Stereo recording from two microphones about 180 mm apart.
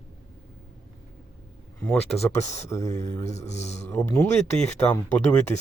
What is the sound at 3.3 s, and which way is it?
Speech, 40° left (ahead or behind).